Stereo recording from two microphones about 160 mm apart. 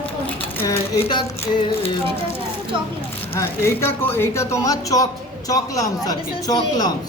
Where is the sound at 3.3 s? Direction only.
15° left (ahead or behind).